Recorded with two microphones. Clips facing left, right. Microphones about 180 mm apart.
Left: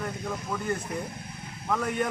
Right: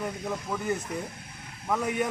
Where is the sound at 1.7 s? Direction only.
10° right (ahead or behind).